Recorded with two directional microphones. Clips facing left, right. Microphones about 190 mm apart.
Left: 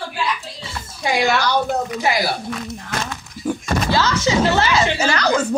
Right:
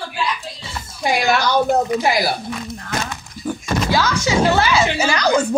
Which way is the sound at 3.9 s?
10° right (ahead or behind).